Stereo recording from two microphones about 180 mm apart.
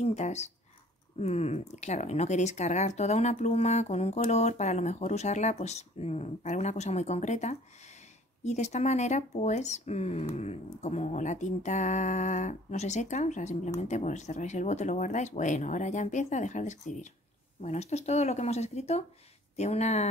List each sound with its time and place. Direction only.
0.0 s speech: 40° left (ahead or behind)